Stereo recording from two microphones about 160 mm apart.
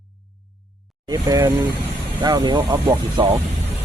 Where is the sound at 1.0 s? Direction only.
20° right (ahead or behind).